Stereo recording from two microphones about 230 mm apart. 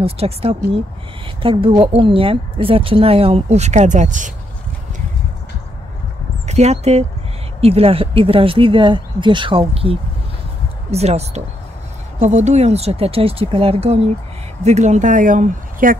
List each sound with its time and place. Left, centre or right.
0.0 s a woman's voice: right
6.4 s a woman's voice: right